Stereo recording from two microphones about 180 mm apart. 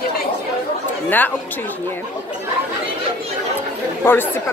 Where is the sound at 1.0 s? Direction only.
10° left (ahead or behind).